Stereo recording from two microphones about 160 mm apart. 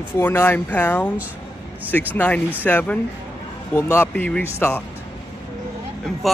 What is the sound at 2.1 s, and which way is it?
Speech, 10° left (ahead or behind).